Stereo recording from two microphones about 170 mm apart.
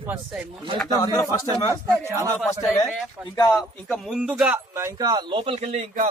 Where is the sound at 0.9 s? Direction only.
20° left (ahead or behind).